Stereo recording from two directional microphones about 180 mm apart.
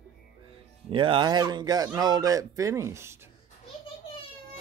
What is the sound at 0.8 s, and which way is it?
Speech, 30° right (ahead or behind).